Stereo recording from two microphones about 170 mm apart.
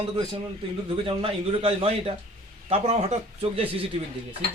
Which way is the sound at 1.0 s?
35° right (ahead or behind).